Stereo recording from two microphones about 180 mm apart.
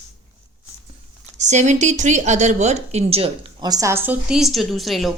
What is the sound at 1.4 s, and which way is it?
A woman's voice, 40° right (ahead or behind).